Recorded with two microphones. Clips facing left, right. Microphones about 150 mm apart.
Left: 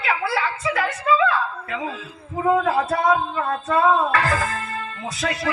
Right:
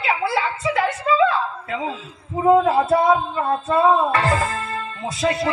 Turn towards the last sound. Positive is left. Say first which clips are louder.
# right 4 dB
turn(degrees=-25)  # may be behind; listen again after turning